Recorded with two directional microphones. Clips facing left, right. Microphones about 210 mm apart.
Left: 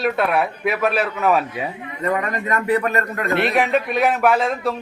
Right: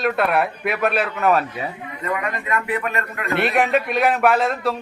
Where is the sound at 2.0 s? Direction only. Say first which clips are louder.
Left 4 dB; 40° left (ahead or behind).